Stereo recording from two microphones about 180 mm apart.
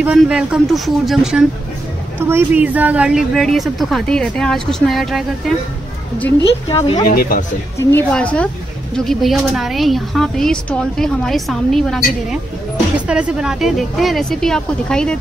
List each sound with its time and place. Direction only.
0.0 s a woman's voice: 5° right (ahead or behind)
7.1 s speech: 55° left (ahead or behind)
7.9 s a woman's voice: 10° left (ahead or behind)